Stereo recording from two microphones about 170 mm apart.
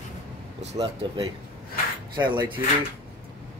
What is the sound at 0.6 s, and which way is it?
Speech, 40° right (ahead or behind).